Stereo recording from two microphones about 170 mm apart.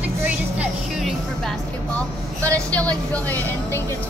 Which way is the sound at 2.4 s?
5° left (ahead or behind).